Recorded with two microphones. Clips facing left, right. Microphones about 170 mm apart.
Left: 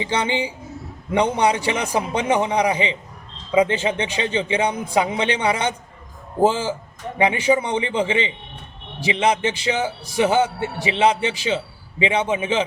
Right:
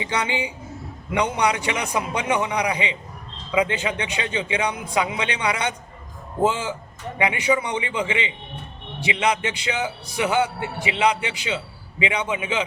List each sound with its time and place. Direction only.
0.0 s a man's voice: 30° left (ahead or behind)